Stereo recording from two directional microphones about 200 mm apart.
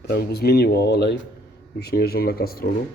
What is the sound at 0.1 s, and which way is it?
Speech, 55° left (ahead or behind).